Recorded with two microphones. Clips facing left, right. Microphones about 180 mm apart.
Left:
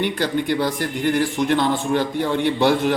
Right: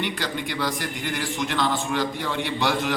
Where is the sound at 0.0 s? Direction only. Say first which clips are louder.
Left 7 dB; 50° left (ahead or behind).